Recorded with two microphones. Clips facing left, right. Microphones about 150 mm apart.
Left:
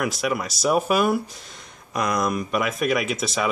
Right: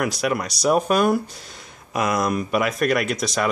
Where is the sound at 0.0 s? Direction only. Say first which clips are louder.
Right 2 dB; centre (ahead or behind).